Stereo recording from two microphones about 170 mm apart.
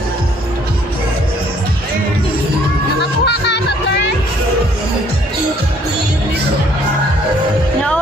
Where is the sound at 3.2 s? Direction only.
75° left (ahead or behind).